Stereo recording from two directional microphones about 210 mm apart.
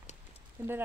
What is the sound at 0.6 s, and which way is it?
Speech, 10° right (ahead or behind).